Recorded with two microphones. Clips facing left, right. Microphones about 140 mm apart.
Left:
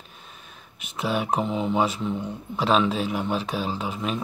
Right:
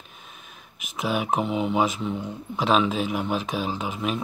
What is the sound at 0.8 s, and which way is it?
Speech, 5° right (ahead or behind).